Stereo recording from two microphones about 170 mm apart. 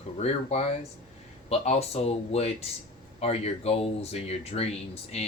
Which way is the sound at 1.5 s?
35° left (ahead or behind).